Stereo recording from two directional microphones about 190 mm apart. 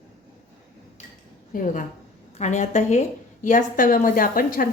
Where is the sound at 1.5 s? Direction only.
40° left (ahead or behind).